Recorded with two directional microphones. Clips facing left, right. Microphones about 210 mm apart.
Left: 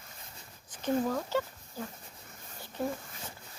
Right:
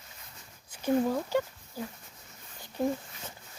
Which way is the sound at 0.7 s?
10° right (ahead or behind).